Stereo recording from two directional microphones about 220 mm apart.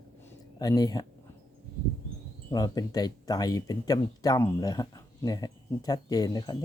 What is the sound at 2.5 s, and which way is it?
Speech, 15° left (ahead or behind).